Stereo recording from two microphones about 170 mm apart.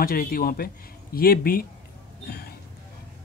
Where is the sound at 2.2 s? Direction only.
65° left (ahead or behind).